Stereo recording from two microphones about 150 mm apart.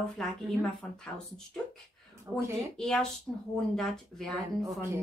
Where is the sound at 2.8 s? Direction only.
5° left (ahead or behind).